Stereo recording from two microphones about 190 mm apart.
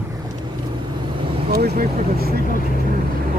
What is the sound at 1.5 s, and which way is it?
Speech, 55° right (ahead or behind).